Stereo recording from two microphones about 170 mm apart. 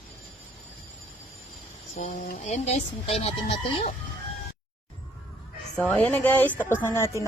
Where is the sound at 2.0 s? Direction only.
50° left (ahead or behind).